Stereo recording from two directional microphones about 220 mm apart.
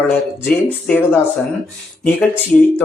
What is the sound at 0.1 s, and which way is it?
Speech, 5° left (ahead or behind).